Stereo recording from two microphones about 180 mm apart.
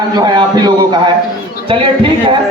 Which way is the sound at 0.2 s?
25° right (ahead or behind).